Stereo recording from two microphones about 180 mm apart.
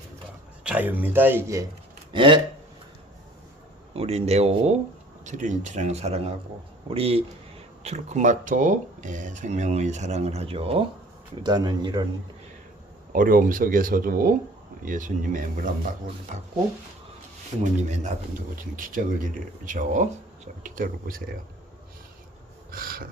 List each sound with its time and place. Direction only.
0.6 s a man's voice: 10° right (ahead or behind)
2.1 s speech: 30° right (ahead or behind)
3.9 s speech: 35° right (ahead or behind)
13.1 s speech: 50° right (ahead or behind)
17.6 s speech: 40° right (ahead or behind)
22.7 s snort: 55° right (ahead or behind)